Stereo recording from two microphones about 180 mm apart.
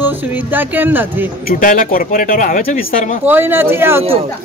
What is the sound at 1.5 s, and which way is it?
Speech, 50° left (ahead or behind).